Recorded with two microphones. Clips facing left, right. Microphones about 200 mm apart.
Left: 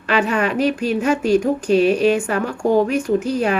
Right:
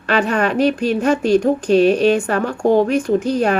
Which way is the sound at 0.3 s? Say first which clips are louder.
Right 2 dB; 5° left (ahead or behind).